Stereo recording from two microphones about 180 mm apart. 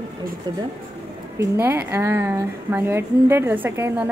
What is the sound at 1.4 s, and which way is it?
A woman's voice, 10° right (ahead or behind).